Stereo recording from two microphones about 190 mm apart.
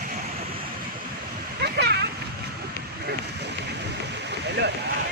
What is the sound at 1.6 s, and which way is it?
Splash, 60° right (ahead or behind).